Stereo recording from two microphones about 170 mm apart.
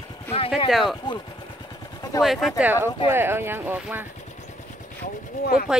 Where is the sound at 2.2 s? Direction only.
Centre (ahead or behind).